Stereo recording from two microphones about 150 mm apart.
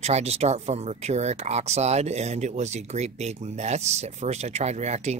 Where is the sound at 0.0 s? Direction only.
45° right (ahead or behind).